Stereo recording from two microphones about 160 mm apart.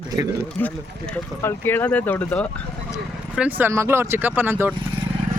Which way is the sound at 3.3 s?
10° right (ahead or behind).